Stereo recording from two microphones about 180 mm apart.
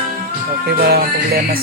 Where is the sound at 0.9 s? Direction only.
60° right (ahead or behind).